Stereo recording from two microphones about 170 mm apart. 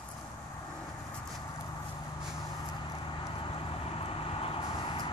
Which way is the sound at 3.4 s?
35° left (ahead or behind).